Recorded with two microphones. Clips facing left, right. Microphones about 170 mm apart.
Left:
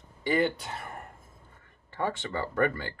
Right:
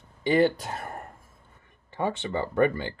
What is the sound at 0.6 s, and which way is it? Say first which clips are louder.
Speech: right 4 dB; 40° right (ahead or behind).